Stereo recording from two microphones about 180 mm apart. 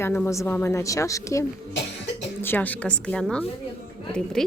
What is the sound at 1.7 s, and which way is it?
Cough, 75° left (ahead or behind).